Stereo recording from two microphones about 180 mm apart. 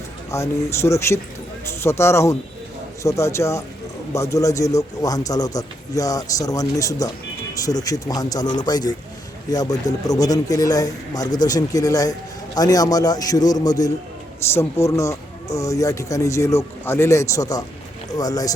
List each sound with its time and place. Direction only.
0.3 s a man's voice: 15° left (ahead or behind)